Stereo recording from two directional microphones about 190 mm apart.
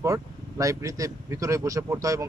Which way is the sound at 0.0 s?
15° right (ahead or behind).